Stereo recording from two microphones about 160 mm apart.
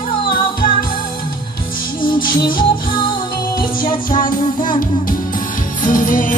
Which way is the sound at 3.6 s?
60° left (ahead or behind).